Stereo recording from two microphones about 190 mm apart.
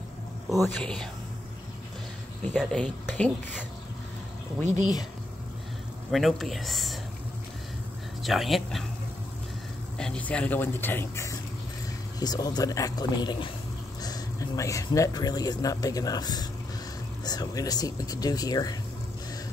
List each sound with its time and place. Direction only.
0.5 s speech: centre (ahead or behind)
2.5 s speech: 5° left (ahead or behind)
6.1 s speech: centre (ahead or behind)
8.2 s speech: centre (ahead or behind)
9.9 s speech: 5° left (ahead or behind)